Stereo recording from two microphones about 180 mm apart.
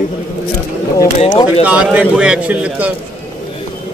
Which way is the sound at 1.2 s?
25° left (ahead or behind).